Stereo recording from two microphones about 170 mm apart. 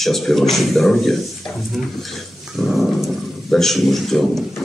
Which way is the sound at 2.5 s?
Centre (ahead or behind).